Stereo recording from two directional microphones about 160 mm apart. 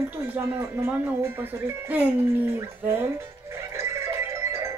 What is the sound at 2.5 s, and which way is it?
Music, 15° right (ahead or behind).